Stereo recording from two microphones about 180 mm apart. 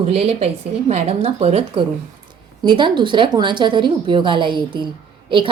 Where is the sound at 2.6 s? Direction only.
25° right (ahead or behind).